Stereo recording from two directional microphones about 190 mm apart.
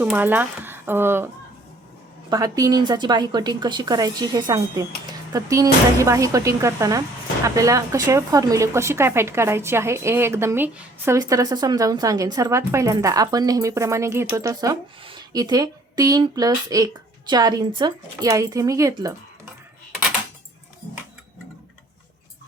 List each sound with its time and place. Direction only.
0.0 s speech: 10° right (ahead or behind)
2.3 s a woman's voice: 20° right (ahead or behind)